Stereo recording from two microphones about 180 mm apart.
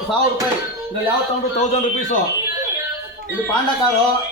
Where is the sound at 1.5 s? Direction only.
40° left (ahead or behind).